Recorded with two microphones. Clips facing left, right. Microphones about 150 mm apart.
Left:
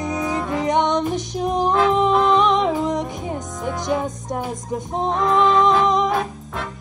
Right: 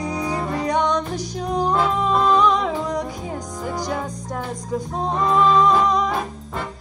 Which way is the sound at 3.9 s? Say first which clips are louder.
Left 4 dB; 20° left (ahead or behind).